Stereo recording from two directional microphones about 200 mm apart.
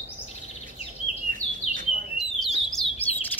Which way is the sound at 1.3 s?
40° right (ahead or behind).